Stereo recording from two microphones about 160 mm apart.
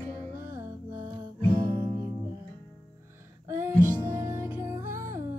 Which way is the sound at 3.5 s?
15° right (ahead or behind).